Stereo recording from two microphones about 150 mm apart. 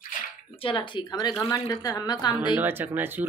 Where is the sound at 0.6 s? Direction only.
35° left (ahead or behind).